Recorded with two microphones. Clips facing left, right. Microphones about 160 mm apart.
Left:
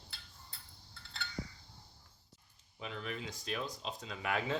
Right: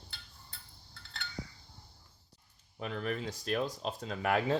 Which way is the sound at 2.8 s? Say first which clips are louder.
Right 6 dB; 50° right (ahead or behind).